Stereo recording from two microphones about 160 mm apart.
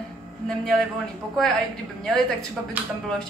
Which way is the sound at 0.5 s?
Centre (ahead or behind).